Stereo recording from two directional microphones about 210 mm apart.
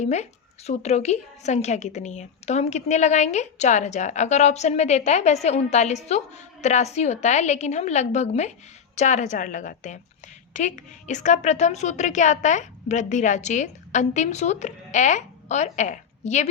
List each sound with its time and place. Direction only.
0.0 s a woman's voice: 30° left (ahead or behind)